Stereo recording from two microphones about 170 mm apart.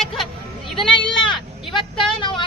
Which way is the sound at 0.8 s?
30° left (ahead or behind).